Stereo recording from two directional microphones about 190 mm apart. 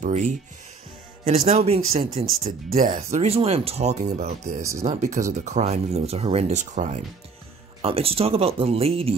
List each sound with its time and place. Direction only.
0.0 s speech: 40° right (ahead or behind)
4.6 s speech: 15° right (ahead or behind)
4.8 s speech: 40° right (ahead or behind)